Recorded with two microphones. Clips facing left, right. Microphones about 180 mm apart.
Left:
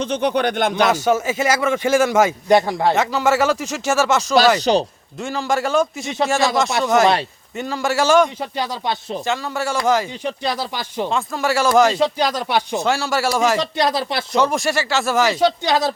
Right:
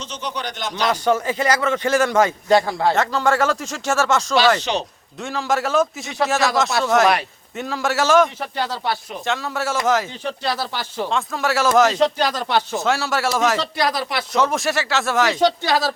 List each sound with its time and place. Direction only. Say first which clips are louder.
0.0 s speech: left 10 dB; 60° left (ahead or behind)
0.9 s a man's voice: left 2 dB; 5° left (ahead or behind)
2.9 s speech: left 2 dB; 5° left (ahead or behind)
4.6 s speech: left 7 dB; 35° left (ahead or behind)
5.2 s speech: left 1 dB; centre (ahead or behind)
8.4 s a man's voice: left 1 dB; 15° left (ahead or behind)
9.2 s speech: even; centre (ahead or behind)
10.2 s a man's voice: left 1 dB; 15° left (ahead or behind)
11.1 s speech: left 1 dB; centre (ahead or behind)
12.8 s speech: left 1 dB; centre (ahead or behind)
13.6 s speech: left 2 dB; 25° left (ahead or behind)
14.3 s speech: left 2 dB; centre (ahead or behind); by 16.0 s 20° left (ahead or behind)